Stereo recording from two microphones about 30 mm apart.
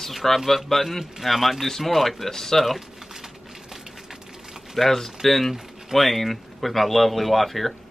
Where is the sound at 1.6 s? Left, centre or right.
Centre.